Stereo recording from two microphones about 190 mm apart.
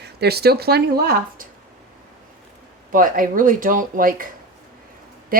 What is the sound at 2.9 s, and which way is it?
Speech, 45° right (ahead or behind).